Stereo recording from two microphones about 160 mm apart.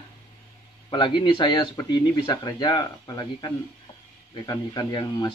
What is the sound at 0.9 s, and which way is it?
Speech, 30° left (ahead or behind).